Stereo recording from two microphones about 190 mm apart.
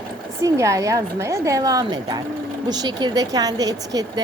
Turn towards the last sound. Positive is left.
turn(degrees=-20)  # may be behind; listen again after turning